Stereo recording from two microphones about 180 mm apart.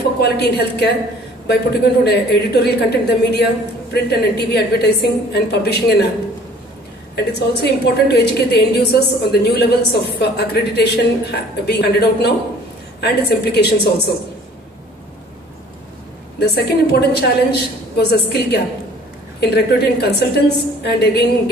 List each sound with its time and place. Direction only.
0.2 s a woman's voice: 65° left (ahead or behind)
7.3 s a woman's voice: 65° left (ahead or behind)
16.3 s a woman's voice: 65° left (ahead or behind)